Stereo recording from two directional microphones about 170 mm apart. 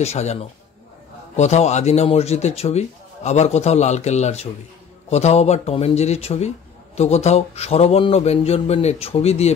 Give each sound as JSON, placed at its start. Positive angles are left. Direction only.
{"t": 0.0, "sound": "a man's voice", "side_deg": 40}